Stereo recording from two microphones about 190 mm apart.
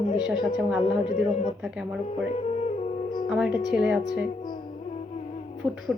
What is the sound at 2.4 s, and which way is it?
Music, 35° left (ahead or behind).